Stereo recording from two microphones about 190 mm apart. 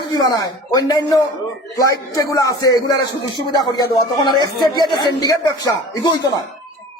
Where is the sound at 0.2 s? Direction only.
20° left (ahead or behind).